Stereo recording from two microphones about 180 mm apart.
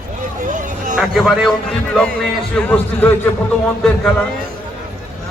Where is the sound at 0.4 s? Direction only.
45° right (ahead or behind).